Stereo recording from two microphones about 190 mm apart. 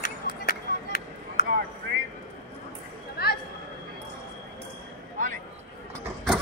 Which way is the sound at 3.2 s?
55° left (ahead or behind).